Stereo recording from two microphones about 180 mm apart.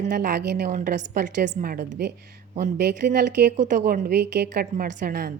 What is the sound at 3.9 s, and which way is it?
Speech, 50° right (ahead or behind).